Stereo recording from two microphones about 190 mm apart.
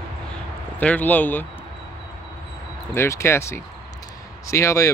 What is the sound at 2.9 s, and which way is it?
Speech, 15° left (ahead or behind).